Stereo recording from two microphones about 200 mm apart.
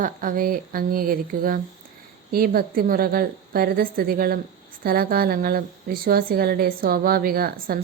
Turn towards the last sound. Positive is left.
turn(degrees=-45)  # may be behind; listen again after turning